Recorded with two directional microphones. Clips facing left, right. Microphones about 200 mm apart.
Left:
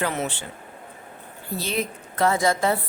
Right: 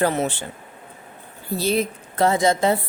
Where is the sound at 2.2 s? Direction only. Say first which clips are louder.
Right 3 dB; 25° right (ahead or behind).